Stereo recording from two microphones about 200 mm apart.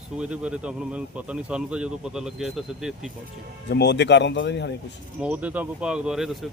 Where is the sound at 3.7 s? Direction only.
60° left (ahead or behind).